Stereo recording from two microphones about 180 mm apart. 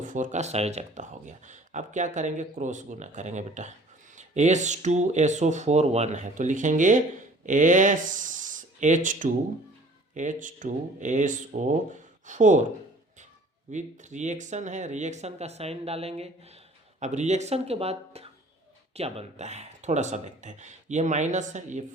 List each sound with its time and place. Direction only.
0.0 s speech: 45° right (ahead or behind)
13.7 s speech: 40° right (ahead or behind)